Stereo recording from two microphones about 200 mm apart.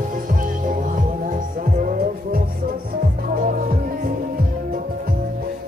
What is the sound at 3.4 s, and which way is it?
Music, 45° right (ahead or behind).